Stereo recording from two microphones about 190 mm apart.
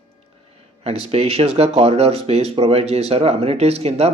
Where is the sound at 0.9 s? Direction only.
35° right (ahead or behind).